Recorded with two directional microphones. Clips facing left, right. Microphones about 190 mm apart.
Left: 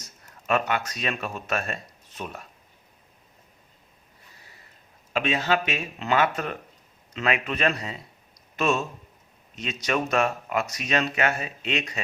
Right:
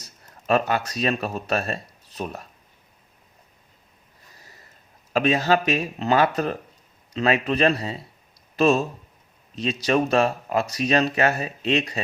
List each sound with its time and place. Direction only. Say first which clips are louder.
0.0 s a sound: right 3 dB; 35° right (ahead or behind)
0.9 s speech: right 6 dB; 35° right (ahead or behind)
5.1 s speech: right 5 dB; 40° right (ahead or behind)